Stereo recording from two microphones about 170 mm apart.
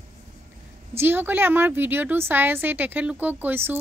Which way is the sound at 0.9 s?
10° right (ahead or behind).